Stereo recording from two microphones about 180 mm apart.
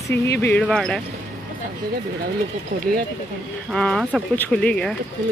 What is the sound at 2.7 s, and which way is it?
Speech, 55° right (ahead or behind).